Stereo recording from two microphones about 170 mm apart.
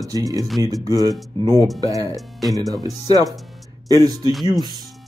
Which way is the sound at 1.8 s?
20° right (ahead or behind).